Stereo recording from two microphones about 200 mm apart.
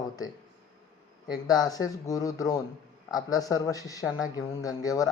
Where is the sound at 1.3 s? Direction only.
20° left (ahead or behind).